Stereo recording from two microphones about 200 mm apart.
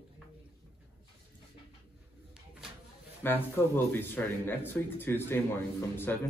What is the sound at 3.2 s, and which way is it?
Speech, 10° left (ahead or behind).